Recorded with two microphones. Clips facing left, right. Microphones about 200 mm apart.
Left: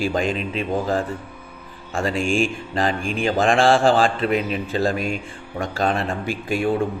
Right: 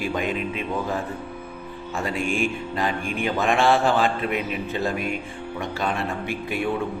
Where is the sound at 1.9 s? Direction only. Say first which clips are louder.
Left 5 dB; 90° left.